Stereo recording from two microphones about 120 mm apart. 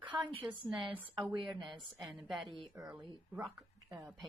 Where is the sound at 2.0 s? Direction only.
Centre (ahead or behind).